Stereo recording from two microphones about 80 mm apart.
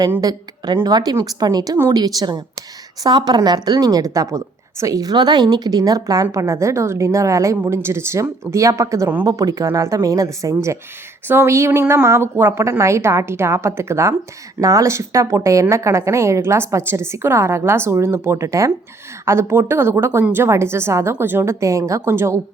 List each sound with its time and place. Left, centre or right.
0.2 s a woman's voice: right